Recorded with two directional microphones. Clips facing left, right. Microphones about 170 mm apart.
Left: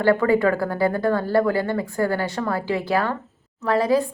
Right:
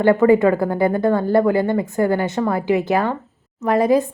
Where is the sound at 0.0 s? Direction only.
20° right (ahead or behind).